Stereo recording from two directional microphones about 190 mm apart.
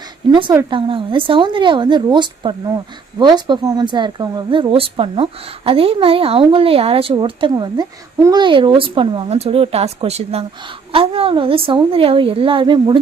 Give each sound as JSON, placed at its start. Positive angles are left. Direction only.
{"t": 0.3, "sound": "speech", "side_deg": -25}